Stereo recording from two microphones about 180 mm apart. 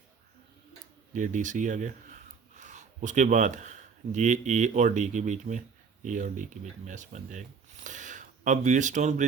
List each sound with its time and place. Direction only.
1.1 s speech: 45° right (ahead or behind)